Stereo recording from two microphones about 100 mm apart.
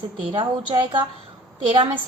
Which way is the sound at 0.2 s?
55° right (ahead or behind).